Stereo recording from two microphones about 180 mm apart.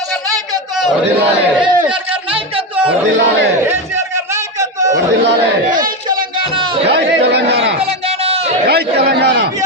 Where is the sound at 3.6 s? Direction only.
10° right (ahead or behind).